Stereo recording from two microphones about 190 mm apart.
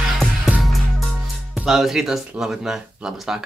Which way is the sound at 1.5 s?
Centre (ahead or behind).